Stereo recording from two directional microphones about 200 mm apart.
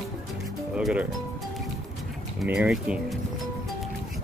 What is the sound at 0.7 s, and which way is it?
Speech, 5° right (ahead or behind).